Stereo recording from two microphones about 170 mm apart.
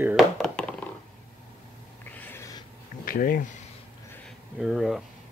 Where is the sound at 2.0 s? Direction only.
10° left (ahead or behind).